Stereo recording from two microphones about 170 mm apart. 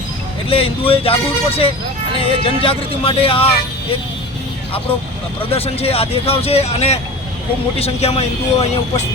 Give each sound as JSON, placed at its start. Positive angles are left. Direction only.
{"t": 0.4, "sound": "speech", "side_deg": 35}
{"t": 5.5, "sound": "speech", "side_deg": 35}